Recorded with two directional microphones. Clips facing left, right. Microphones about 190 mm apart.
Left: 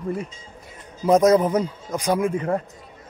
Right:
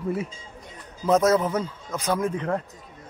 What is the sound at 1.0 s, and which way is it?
A man's voice, 15° left (ahead or behind).